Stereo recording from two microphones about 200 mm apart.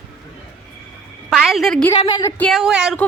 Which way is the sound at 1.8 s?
20° left (ahead or behind).